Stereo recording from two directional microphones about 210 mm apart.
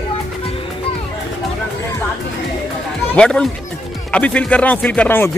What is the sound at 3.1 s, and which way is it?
Speech, 5° left (ahead or behind).